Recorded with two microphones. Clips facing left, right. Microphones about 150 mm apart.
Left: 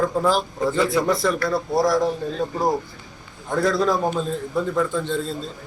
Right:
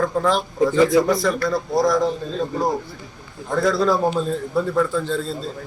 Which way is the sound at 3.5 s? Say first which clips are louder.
Right 2 dB; centre (ahead or behind).